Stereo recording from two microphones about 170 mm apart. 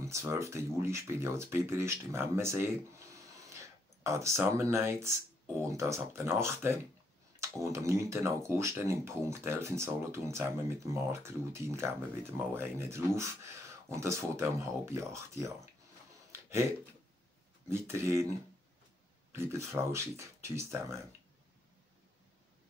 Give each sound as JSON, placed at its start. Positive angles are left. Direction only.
{"t": 0.0, "sound": "speech", "side_deg": -15}
{"t": 16.3, "sound": "a sound", "side_deg": -15}
{"t": 17.6, "sound": "speech", "side_deg": -15}
{"t": 19.3, "sound": "speech", "side_deg": -15}